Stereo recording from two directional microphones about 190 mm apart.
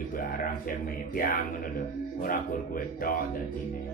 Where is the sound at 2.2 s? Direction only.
50° left (ahead or behind).